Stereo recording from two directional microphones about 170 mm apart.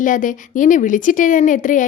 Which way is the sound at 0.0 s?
50° left (ahead or behind).